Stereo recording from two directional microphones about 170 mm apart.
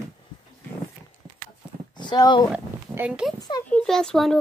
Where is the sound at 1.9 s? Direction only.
25° left (ahead or behind).